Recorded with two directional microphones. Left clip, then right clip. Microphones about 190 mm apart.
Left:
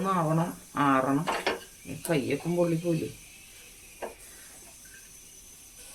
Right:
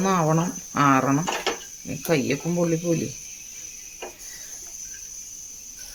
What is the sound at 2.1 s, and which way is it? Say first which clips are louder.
Speech: right 5 dB; 50° right (ahead or behind).